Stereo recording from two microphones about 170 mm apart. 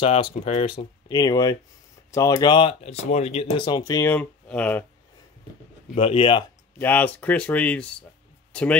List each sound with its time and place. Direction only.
0.0 s speech: 35° left (ahead or behind)
0.7 s speech: 25° left (ahead or behind); by 4.8 s 10° left (ahead or behind)
5.9 s speech: 35° left (ahead or behind)
6.8 s speech: 10° left (ahead or behind)